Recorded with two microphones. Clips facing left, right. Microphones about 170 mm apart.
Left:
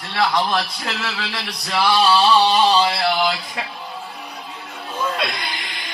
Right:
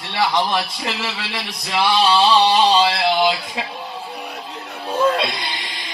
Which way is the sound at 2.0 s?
20° right (ahead or behind).